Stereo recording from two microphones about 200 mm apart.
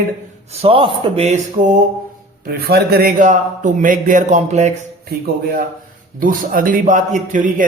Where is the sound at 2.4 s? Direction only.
50° right (ahead or behind); by 4.7 s 35° right (ahead or behind).